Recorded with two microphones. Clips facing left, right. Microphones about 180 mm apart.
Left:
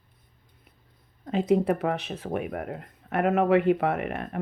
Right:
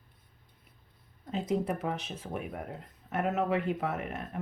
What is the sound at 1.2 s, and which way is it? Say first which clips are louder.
Speech: left 8 dB; 70° left (ahead or behind).